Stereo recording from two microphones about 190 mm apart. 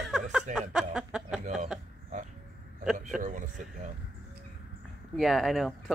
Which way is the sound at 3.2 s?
40° right (ahead or behind).